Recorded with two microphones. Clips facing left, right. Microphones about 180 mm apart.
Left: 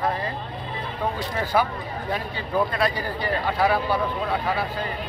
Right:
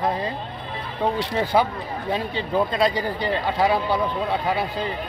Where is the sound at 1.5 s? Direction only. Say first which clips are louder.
Right 1 dB; 20° right (ahead or behind).